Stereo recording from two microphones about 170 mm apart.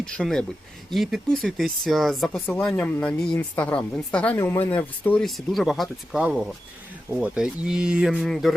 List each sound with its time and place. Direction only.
0.0 s a woman's voice: 5° left (ahead or behind)
4.4 s a woman's voice: 20° left (ahead or behind); by 8.5 s centre (ahead or behind)